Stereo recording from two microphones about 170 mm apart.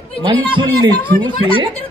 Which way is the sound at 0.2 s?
30° right (ahead or behind).